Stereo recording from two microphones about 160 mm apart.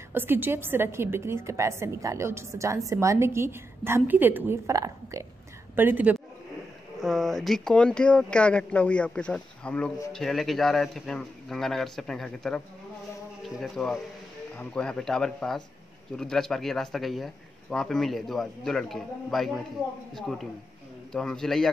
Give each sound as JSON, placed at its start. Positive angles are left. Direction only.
{"t": 0.1, "sound": "a woman's voice", "side_deg": -15}
{"t": 7.0, "sound": "a man's voice", "side_deg": 0}